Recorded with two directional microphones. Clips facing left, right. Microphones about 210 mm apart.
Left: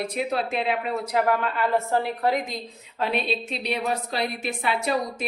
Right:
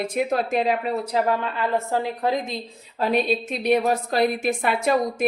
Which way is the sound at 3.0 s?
40° right (ahead or behind).